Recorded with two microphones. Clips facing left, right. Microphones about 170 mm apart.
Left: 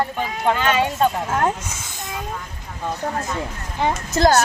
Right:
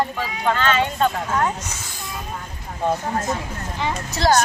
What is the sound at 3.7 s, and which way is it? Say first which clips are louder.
Speech: left 6 dB; 50° left (ahead or behind).